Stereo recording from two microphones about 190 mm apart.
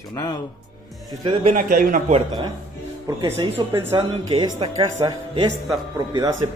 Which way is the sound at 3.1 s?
20° right (ahead or behind).